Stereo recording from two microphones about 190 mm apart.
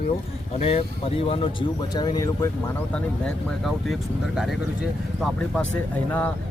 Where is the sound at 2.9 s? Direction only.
Centre (ahead or behind).